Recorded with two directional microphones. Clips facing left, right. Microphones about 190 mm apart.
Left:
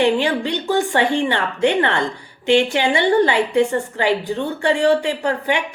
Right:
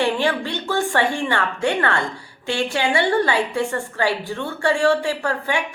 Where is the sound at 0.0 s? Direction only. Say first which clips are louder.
Left 3 dB; 15° left (ahead or behind).